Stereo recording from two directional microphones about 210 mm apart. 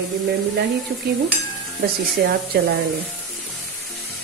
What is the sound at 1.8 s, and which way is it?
Speech, 45° right (ahead or behind).